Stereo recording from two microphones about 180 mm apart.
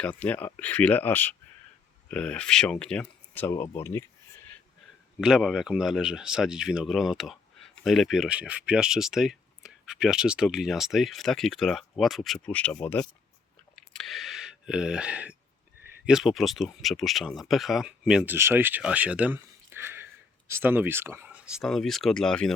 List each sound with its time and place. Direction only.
0.0 s speech: 10° left (ahead or behind)
5.2 s speech: centre (ahead or behind)
13.7 s a sound: centre (ahead or behind)
16.0 s speech: centre (ahead or behind)